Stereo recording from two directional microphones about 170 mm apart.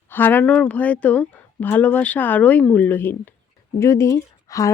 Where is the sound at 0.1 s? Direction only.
10° left (ahead or behind).